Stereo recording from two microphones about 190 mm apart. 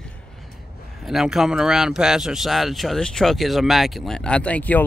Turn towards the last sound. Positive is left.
turn(degrees=10)  # may be behind; listen again after turning